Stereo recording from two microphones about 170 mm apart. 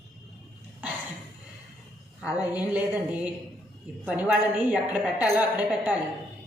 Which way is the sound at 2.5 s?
10° right (ahead or behind).